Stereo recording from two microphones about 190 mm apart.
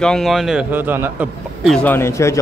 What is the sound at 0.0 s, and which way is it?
A man's voice, centre (ahead or behind).